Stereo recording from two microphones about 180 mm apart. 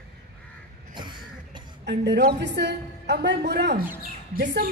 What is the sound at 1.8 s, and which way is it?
A woman's voice, 70° right (ahead or behind).